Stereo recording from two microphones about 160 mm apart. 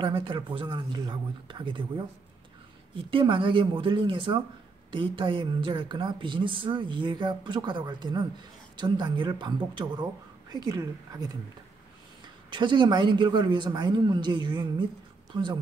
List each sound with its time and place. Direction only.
0.0 s speech: 30° right (ahead or behind)
3.1 s speech: 30° right (ahead or behind)
12.4 s speech: 30° right (ahead or behind)